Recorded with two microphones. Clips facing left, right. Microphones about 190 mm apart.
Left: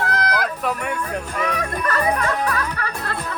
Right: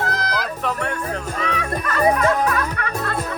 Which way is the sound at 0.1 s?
55° left (ahead or behind).